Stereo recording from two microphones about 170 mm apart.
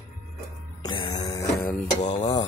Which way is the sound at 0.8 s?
25° left (ahead or behind).